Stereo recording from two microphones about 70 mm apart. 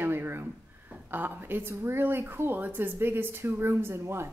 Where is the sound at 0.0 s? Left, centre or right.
Right.